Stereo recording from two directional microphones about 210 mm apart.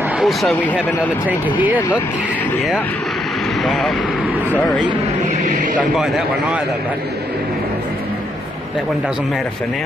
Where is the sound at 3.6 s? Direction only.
Centre (ahead or behind).